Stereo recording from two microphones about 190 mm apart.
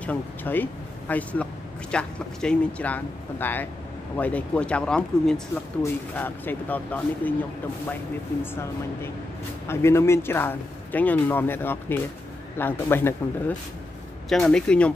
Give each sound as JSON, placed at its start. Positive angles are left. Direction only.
{"t": 0.0, "sound": "speech", "side_deg": 10}
{"t": 8.4, "sound": "speech", "side_deg": 10}